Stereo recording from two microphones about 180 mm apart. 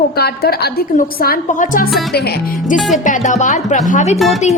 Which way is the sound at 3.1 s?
45° left (ahead or behind).